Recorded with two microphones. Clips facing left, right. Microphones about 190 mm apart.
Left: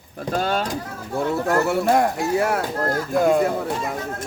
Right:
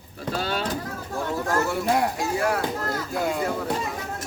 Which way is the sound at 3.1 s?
50° left (ahead or behind).